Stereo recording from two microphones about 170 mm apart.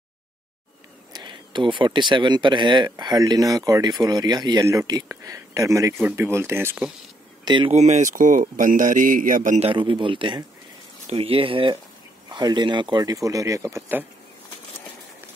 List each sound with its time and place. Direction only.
1.1 s speech: 25° right (ahead or behind)
7.4 s speech: 25° right (ahead or behind)
7.7 s speech: 45° right (ahead or behind)
9.7 s speech: 30° right (ahead or behind); by 14.0 s 15° right (ahead or behind)